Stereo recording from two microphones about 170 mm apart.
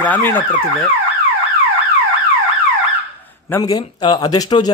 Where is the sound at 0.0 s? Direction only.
10° left (ahead or behind).